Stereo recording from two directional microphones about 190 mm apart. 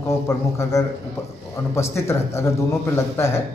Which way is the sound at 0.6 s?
15° left (ahead or behind).